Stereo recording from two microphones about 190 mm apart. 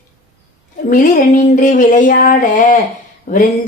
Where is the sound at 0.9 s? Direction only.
40° left (ahead or behind).